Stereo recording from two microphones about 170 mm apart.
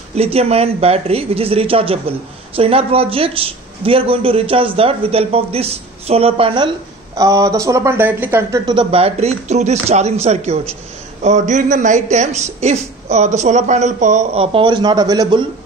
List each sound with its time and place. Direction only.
0.1 s speech: 35° right (ahead or behind)
7.2 s speech: 20° right (ahead or behind)